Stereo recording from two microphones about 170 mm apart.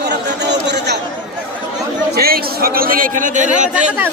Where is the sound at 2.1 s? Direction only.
65° right (ahead or behind).